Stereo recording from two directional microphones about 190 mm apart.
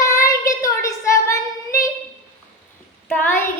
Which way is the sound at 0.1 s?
15° left (ahead or behind).